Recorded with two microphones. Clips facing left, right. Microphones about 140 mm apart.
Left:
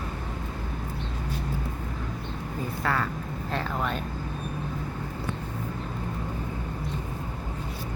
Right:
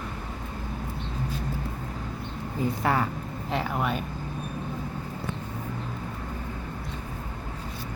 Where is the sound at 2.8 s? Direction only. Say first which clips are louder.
Right 2 dB; 20° right (ahead or behind).